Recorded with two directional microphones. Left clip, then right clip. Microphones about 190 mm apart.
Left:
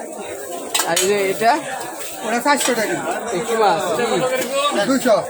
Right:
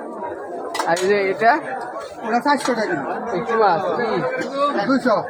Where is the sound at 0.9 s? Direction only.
15° left (ahead or behind).